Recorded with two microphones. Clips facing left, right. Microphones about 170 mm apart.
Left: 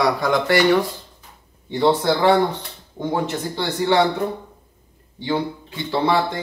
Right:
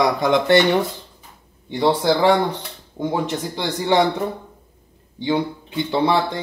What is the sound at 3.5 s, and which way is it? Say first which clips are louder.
Speech: even; 20° right (ahead or behind).